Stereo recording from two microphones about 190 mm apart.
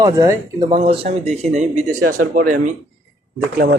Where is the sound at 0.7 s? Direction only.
30° right (ahead or behind).